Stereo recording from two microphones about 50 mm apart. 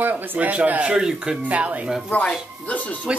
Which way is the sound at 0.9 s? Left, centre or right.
Centre.